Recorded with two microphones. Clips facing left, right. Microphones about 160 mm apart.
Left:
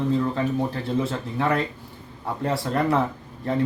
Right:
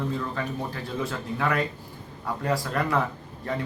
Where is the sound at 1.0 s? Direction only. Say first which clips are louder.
Left 3 dB; 30° left (ahead or behind).